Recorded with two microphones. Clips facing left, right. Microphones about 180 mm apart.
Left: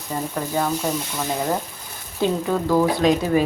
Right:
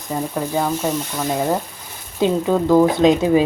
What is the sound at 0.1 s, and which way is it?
Speech, 10° right (ahead or behind).